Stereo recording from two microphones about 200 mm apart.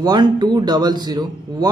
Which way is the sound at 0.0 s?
20° right (ahead or behind).